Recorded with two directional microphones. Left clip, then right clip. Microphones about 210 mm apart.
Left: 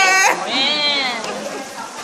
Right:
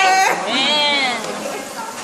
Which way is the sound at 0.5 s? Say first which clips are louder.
Right 1 dB; 15° left (ahead or behind).